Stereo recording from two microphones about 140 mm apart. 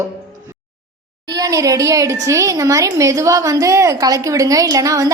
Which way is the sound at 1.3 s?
25° right (ahead or behind).